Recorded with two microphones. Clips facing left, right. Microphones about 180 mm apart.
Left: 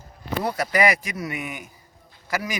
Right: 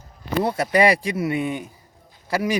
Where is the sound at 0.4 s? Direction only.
25° right (ahead or behind).